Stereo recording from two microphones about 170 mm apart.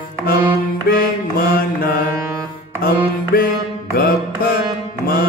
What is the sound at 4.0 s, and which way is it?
Music, 60° left (ahead or behind).